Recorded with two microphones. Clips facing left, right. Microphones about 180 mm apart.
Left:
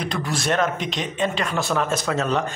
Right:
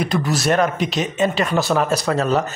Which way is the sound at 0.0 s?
5° right (ahead or behind).